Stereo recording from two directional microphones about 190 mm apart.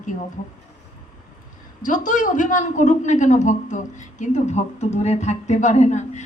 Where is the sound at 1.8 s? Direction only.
40° left (ahead or behind).